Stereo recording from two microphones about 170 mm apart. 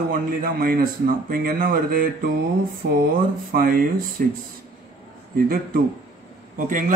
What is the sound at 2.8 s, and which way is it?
Speech, 90° right.